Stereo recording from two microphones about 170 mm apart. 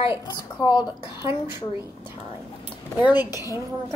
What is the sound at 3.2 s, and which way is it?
Speech, 20° left (ahead or behind).